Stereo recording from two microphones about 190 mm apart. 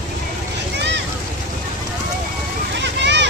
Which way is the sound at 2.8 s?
70° right (ahead or behind).